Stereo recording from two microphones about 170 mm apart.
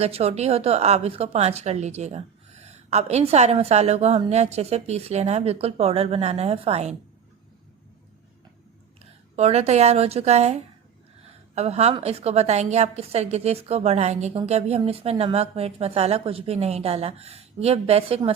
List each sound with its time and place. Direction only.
0.0 s a woman's voice: 35° right (ahead or behind)
9.3 s a woman's voice: 40° right (ahead or behind)